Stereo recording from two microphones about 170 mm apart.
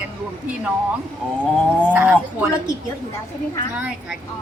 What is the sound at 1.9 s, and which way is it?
Speech, 10° right (ahead or behind).